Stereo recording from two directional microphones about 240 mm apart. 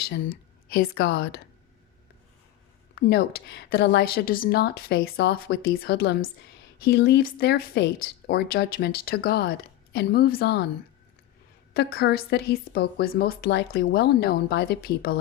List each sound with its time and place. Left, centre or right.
0.7 s a woman's voice: left
2.9 s a woman's voice: left
11.7 s a woman's voice: left